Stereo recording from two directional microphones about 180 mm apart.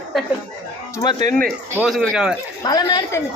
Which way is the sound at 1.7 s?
Centre (ahead or behind).